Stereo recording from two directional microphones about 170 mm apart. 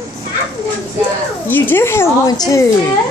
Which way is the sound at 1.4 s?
10° left (ahead or behind).